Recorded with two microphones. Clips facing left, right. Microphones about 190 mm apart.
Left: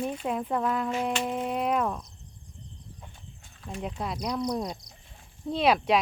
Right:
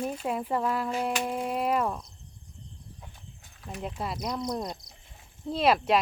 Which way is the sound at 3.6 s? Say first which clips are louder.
Left 1 dB; centre (ahead or behind).